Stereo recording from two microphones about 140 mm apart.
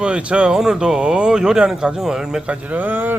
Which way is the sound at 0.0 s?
10° right (ahead or behind).